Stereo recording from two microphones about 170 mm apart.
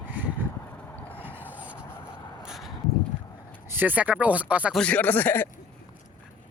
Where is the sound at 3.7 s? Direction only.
10° right (ahead or behind).